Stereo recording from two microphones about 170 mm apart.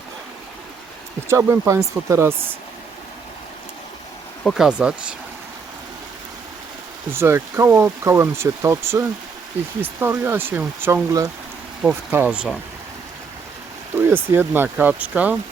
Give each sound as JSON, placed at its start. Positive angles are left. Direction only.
{"t": 1.3, "sound": "speech", "side_deg": -15}
{"t": 4.4, "sound": "speech", "side_deg": -5}
{"t": 7.1, "sound": "speech", "side_deg": -15}
{"t": 14.1, "sound": "speech", "side_deg": -10}